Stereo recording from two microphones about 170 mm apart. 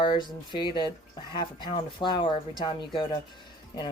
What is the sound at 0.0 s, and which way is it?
Speech, 30° left (ahead or behind).